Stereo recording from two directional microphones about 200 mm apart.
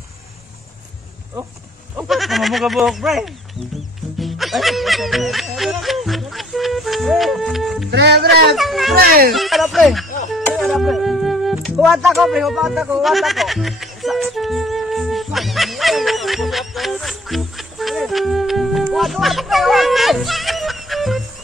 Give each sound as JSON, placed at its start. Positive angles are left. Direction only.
{"t": 2.0, "sound": "speech", "side_deg": 0}
{"t": 3.7, "sound": "music", "side_deg": 0}
{"t": 7.9, "sound": "speech", "side_deg": -55}
{"t": 8.5, "sound": "speech", "side_deg": 0}
{"t": 8.9, "sound": "speech", "side_deg": -50}
{"t": 9.3, "sound": "speech", "side_deg": 0}
{"t": 10.5, "sound": "music", "side_deg": 0}